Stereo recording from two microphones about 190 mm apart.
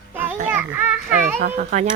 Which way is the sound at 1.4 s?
45° right (ahead or behind).